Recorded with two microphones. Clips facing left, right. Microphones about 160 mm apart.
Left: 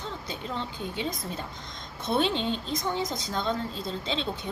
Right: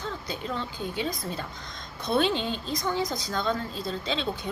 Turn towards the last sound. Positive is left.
turn(degrees=25)  # may be behind; listen again after turning